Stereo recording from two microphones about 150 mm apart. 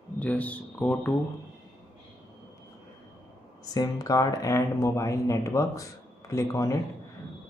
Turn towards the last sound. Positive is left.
turn(degrees=20)  # may be behind; listen again after turning